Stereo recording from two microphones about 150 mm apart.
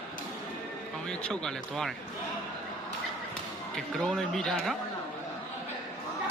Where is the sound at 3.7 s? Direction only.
5° left (ahead or behind).